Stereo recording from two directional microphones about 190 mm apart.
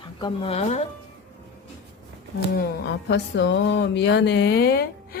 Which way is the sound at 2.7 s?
65° left (ahead or behind).